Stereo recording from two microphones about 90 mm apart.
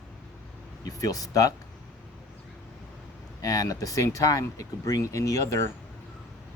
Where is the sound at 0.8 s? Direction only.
40° left (ahead or behind).